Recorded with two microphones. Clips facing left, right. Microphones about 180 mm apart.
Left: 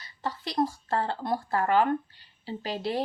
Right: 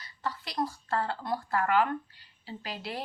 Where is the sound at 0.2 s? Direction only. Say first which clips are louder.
Left 5 dB; 25° left (ahead or behind).